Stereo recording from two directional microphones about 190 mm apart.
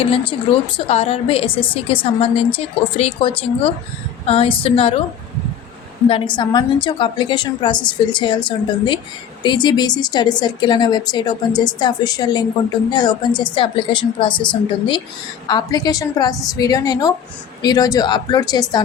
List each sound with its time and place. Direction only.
0.0 s a woman's voice: 30° left (ahead or behind)
6.1 s a woman's voice: 25° left (ahead or behind)
15.4 s a woman's voice: 20° left (ahead or behind)